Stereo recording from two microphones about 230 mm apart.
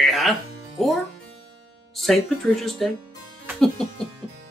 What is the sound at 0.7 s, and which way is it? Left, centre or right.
Speech, centre.